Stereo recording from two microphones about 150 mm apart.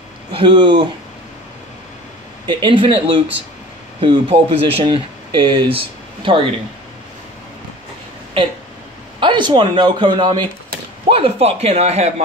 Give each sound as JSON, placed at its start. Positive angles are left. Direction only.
{"t": 0.3, "sound": "speech", "side_deg": -35}
{"t": 2.4, "sound": "speech", "side_deg": -35}
{"t": 4.0, "sound": "speech", "side_deg": -35}
{"t": 9.2, "sound": "speech", "side_deg": -30}